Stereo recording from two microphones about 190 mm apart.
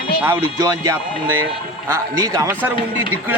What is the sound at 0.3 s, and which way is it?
Speech, 15° right (ahead or behind).